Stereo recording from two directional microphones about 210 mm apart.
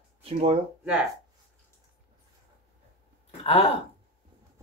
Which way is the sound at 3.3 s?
30° left (ahead or behind).